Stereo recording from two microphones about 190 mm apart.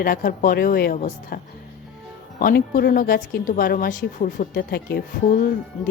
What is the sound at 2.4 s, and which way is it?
Speech, 50° left (ahead or behind).